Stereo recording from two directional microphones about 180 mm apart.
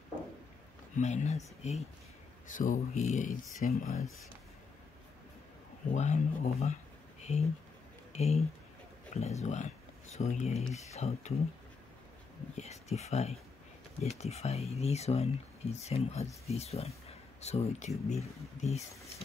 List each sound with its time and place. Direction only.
0.9 s speech: 40° left (ahead or behind)
5.9 s speech: 40° left (ahead or behind)
12.5 s speech: 35° left (ahead or behind)